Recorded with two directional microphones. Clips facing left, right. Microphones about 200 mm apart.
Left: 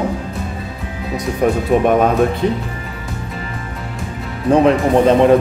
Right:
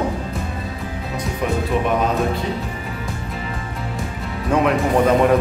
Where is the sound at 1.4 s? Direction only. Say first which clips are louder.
Left 7 dB; 45° left (ahead or behind).